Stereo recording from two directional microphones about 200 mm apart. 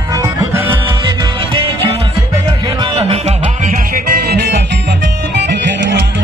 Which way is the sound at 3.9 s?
55° right (ahead or behind).